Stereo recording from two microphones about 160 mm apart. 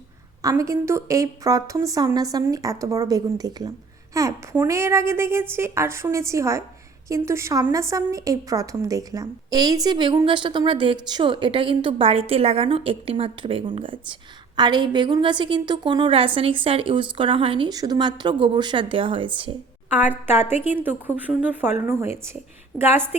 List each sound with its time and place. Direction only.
0.4 s a woman's voice: 20° right (ahead or behind)
19.9 s a woman's voice: 10° right (ahead or behind)